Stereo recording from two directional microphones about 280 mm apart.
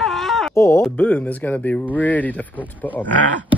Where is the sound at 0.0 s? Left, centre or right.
Centre.